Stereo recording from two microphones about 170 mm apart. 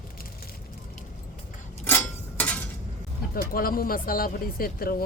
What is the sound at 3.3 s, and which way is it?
Speech, 60° left (ahead or behind).